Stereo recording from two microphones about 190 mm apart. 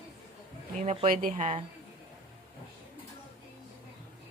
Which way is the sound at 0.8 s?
35° right (ahead or behind).